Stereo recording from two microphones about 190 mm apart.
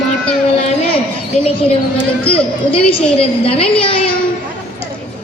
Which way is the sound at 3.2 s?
30° left (ahead or behind).